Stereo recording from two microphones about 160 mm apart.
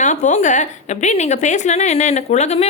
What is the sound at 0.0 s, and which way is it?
A woman's voice, 50° left (ahead or behind).